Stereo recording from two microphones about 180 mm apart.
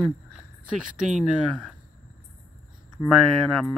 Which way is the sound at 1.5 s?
Centre (ahead or behind).